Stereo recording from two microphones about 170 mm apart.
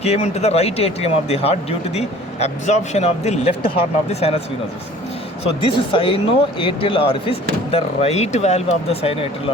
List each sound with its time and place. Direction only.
0.0 s speech: 40° left (ahead or behind)
5.4 s speech: 35° left (ahead or behind)